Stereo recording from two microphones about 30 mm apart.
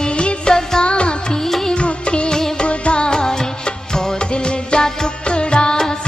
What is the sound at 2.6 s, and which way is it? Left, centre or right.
Music, left.